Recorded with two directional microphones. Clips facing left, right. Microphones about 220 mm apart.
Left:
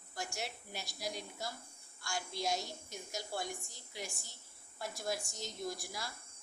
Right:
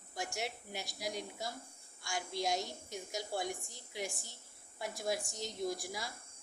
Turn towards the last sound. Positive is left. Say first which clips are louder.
# right 3 dB
turn(degrees=-15)  # may be behind; listen again after turning